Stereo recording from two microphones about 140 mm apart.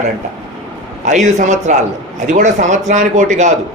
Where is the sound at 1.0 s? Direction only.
60° right (ahead or behind).